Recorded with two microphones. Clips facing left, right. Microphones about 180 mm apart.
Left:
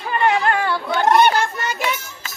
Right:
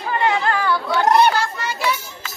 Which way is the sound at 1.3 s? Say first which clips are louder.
Left 1 dB; 20° left (ahead or behind).